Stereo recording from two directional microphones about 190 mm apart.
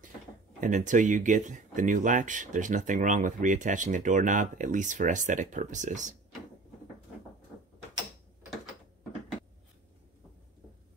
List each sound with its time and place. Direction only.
0.6 s speech: 40° right (ahead or behind)